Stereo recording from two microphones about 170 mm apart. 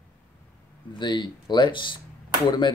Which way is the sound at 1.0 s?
25° left (ahead or behind).